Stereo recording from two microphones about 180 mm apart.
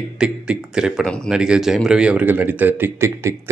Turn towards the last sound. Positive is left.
turn(degrees=-15)  # may be behind; listen again after turning